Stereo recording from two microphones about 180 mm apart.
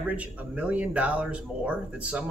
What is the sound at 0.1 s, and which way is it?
A man's voice, 5° right (ahead or behind).